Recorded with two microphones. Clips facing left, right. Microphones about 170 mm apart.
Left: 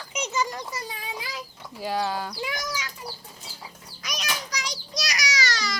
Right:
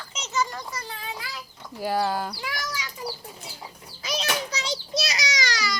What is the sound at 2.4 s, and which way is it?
Speech, 20° left (ahead or behind).